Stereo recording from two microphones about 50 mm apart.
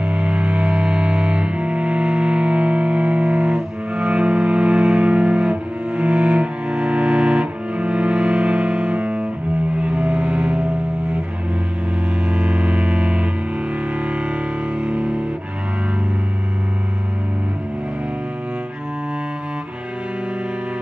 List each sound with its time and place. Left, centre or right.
0.0 s music: right
9.8 s vehicle: right
12.3 s music: right